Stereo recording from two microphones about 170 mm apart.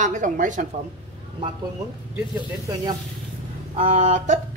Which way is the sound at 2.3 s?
25° right (ahead or behind).